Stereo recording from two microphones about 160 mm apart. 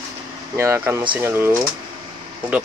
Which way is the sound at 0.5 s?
15° right (ahead or behind).